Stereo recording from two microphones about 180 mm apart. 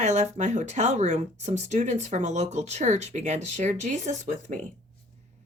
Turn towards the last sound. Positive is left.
turn(degrees=-40)  # may be behind; listen again after turning